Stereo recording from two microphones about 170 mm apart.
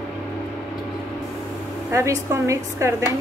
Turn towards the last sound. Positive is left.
turn(degrees=-20)  # may be behind; listen again after turning